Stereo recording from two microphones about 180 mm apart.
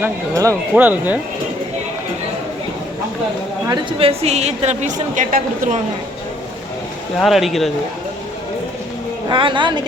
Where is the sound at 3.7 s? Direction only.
30° right (ahead or behind); by 5.8 s 45° right (ahead or behind).